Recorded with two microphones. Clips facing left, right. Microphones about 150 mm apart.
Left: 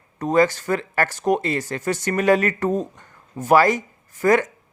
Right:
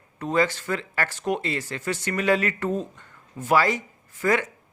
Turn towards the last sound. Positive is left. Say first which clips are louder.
# left 6 dB
turn(degrees=45)  # may be behind; listen again after turning